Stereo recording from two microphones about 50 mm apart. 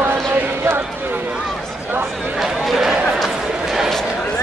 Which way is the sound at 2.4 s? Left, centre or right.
Centre.